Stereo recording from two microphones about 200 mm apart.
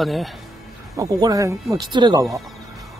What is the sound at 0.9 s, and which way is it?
Speech, 15° right (ahead or behind).